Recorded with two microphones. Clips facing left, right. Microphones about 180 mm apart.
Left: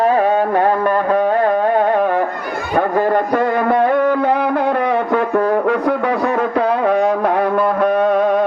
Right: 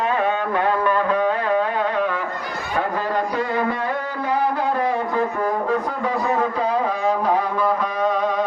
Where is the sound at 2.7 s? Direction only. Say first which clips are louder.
Left 8 dB; 50° left (ahead or behind).